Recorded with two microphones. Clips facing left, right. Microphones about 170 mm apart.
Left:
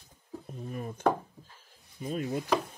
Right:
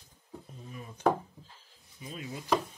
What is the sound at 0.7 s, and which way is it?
Speech, 50° left (ahead or behind).